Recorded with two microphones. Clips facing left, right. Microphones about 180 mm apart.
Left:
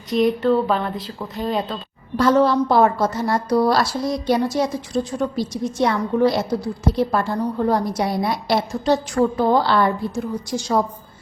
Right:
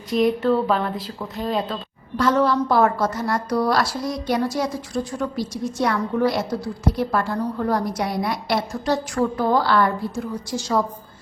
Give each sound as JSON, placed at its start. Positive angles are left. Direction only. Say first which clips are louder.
{"t": 0.1, "sound": "a woman's voice", "louder": "left 1 dB", "side_deg": 0}
{"t": 2.1, "sound": "a woman's voice", "louder": "left 3 dB", "side_deg": 30}